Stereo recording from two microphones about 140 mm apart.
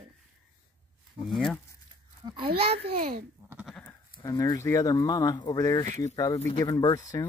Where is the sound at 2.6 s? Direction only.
45° right (ahead or behind).